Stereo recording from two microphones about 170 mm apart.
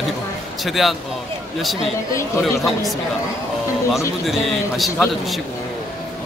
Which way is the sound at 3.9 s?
Centre (ahead or behind).